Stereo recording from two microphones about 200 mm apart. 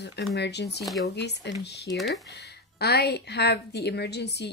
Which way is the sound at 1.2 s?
55° left (ahead or behind).